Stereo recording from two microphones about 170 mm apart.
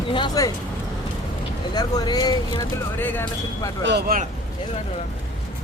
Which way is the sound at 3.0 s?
10° left (ahead or behind).